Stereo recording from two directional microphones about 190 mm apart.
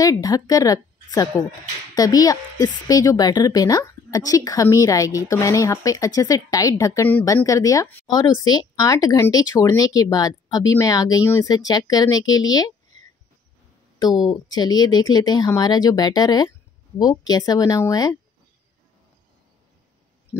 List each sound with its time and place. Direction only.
0.0 s a woman's voice: 20° left (ahead or behind)
14.3 s a woman's voice: 20° left (ahead or behind)